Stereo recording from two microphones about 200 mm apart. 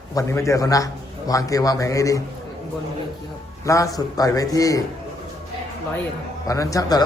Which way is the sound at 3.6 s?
15° left (ahead or behind).